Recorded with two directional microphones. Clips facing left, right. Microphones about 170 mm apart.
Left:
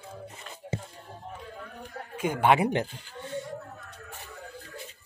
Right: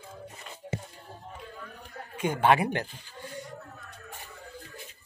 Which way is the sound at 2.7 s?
25° left (ahead or behind).